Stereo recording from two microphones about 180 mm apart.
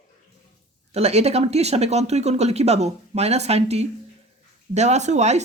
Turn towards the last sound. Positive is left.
turn(degrees=-40)  # may be behind; listen again after turning